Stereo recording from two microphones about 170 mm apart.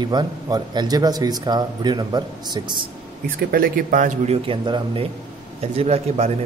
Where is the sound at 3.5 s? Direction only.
55° right (ahead or behind).